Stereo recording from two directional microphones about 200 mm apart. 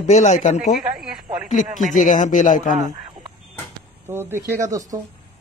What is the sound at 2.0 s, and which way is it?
Speech, 40° left (ahead or behind).